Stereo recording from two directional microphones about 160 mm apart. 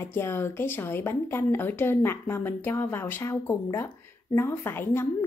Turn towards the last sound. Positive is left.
turn(degrees=15)  # may be behind; listen again after turning